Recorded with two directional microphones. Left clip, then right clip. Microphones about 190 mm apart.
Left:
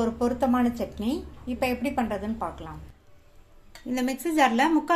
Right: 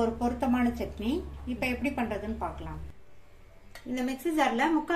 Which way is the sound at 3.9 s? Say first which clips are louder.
Left 5 dB; 50° left (ahead or behind).